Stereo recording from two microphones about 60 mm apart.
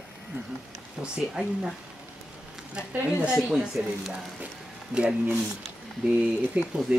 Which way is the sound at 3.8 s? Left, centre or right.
Right.